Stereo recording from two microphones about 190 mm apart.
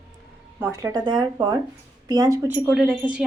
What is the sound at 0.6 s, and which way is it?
Speech, 10° right (ahead or behind).